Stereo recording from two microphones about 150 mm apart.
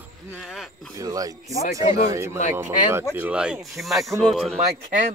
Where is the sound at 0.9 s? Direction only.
25° right (ahead or behind); by 4.6 s centre (ahead or behind).